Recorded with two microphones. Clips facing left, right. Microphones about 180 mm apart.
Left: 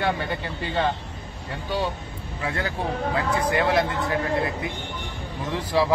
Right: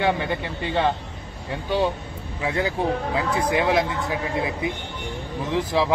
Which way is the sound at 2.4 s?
20° right (ahead or behind).